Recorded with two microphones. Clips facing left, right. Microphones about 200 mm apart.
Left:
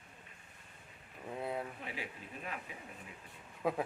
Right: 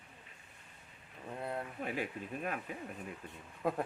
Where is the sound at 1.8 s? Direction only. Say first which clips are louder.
Right 7 dB; 50° right (ahead or behind).